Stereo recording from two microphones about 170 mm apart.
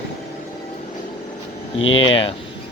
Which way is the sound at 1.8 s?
90° left.